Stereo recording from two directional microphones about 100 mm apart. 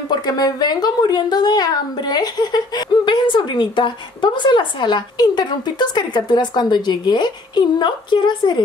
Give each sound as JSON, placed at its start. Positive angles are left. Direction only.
{"t": 0.1, "sound": "a woman's voice", "side_deg": 45}